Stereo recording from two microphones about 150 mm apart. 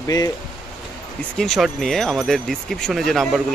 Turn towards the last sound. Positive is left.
turn(degrees=0)  # may be behind; listen again after turning